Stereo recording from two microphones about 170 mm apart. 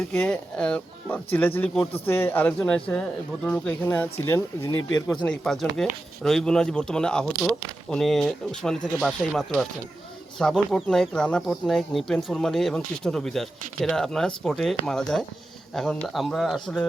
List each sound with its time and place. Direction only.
0.1 s a man's voice: 10° left (ahead or behind); by 5.2 s 25° left (ahead or behind)
5.2 s speech: 5° left (ahead or behind)